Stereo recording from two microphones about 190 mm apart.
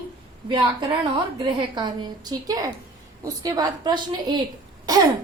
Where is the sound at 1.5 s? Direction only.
25° right (ahead or behind).